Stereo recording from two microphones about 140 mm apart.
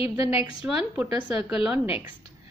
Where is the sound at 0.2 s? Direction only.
45° left (ahead or behind).